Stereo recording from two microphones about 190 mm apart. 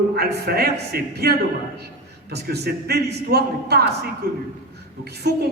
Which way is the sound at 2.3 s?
55° right (ahead or behind).